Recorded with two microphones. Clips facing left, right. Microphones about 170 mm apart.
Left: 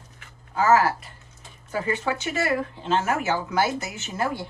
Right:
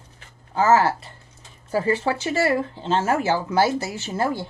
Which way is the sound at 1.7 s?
35° right (ahead or behind).